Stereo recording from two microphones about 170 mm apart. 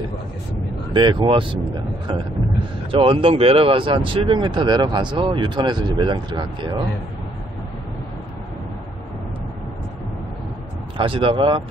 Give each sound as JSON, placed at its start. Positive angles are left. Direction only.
{"t": 0.9, "sound": "speech", "side_deg": -30}
{"t": 2.9, "sound": "speech", "side_deg": -30}
{"t": 11.0, "sound": "speech", "side_deg": -30}